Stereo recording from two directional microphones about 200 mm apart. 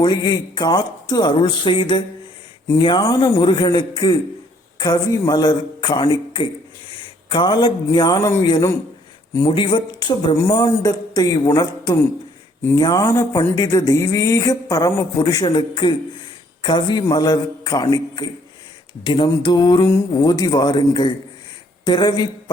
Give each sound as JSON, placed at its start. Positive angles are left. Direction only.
{"t": 0.0, "sound": "a man's voice", "side_deg": 20}